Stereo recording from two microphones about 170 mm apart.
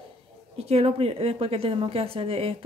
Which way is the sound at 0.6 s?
35° right (ahead or behind).